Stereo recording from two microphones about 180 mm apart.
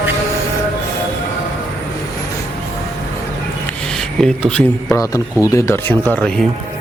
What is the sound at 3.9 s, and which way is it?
Speech, 5° left (ahead or behind).